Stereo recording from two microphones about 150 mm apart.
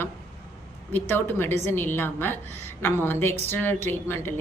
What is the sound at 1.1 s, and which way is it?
A woman's voice, 15° left (ahead or behind).